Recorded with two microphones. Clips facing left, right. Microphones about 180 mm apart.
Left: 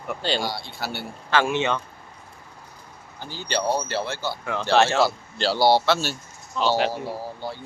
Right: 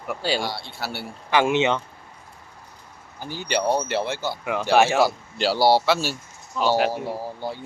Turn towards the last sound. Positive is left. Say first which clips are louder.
# right 2 dB
turn(degrees=-15)  # may be behind; listen again after turning